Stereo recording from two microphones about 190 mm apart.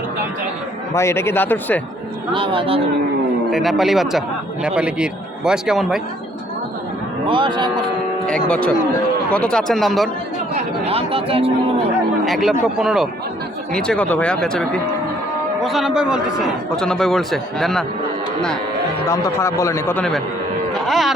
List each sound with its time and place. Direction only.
0.9 s speech: 15° left (ahead or behind)
2.3 s speech: 25° right (ahead or behind)
3.5 s a man's voice: centre (ahead or behind)
7.3 s speech: 25° right (ahead or behind)
8.4 s a man's voice: 5° left (ahead or behind)
10.5 s speech: 30° right (ahead or behind)
12.2 s a man's voice: centre (ahead or behind)
19.0 s speech: 15° left (ahead or behind)
20.7 s music: centre (ahead or behind)